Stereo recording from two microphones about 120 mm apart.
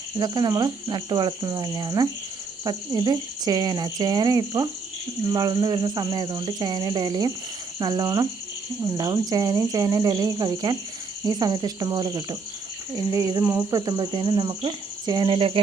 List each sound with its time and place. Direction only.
0.2 s speech: 35° right (ahead or behind); by 15.6 s 50° right (ahead or behind)